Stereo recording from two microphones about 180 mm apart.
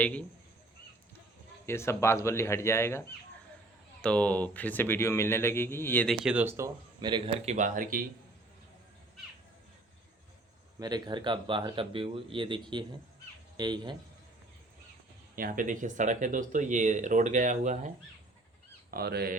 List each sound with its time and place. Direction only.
0.0 s speech: 5° left (ahead or behind)
1.6 s speech: 15° left (ahead or behind)
4.0 s speech: 5° left (ahead or behind)
6.2 s speech: 10° right (ahead or behind)
7.0 s speech: 25° right (ahead or behind)
7.4 s speech: 45° right (ahead or behind)
10.8 s speech: 20° right (ahead or behind)
15.4 s speech: 50° right (ahead or behind)
18.9 s speech: 60° right (ahead or behind)